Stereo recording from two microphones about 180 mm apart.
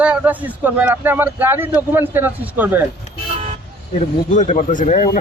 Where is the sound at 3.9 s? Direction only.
45° left (ahead or behind).